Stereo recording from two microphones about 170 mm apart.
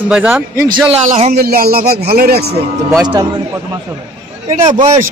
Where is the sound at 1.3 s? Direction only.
60° right (ahead or behind).